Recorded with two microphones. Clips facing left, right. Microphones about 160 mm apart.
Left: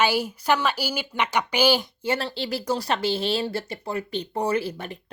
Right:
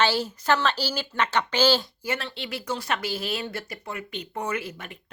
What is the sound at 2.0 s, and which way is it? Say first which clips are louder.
Speech: left 5 dB; 30° left (ahead or behind).